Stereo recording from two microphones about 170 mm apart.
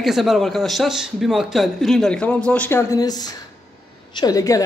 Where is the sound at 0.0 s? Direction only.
Centre (ahead or behind).